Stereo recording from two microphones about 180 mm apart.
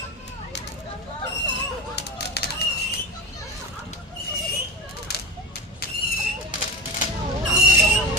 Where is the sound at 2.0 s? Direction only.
65° left (ahead or behind).